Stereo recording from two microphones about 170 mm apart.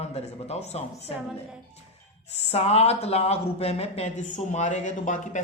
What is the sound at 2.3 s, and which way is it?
A man's voice, 40° left (ahead or behind).